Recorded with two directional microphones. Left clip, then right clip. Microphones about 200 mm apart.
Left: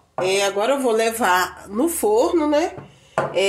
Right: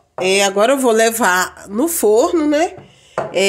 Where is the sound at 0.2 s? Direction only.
50° right (ahead or behind).